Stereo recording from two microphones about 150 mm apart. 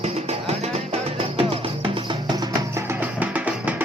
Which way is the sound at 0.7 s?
40° right (ahead or behind).